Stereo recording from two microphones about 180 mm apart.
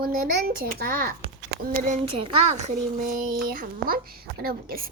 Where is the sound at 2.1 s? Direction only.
30° right (ahead or behind).